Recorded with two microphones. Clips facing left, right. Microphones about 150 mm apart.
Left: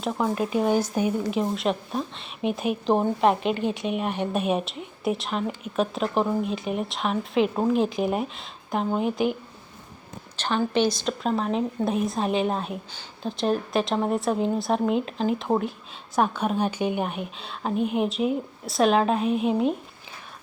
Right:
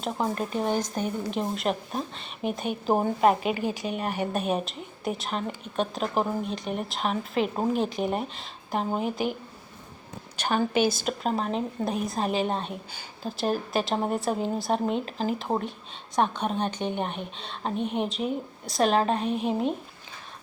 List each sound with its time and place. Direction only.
0.0 s speech: 5° left (ahead or behind)
10.3 s speech: 10° right (ahead or behind)